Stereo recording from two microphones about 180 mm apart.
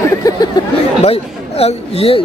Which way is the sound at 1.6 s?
35° left (ahead or behind).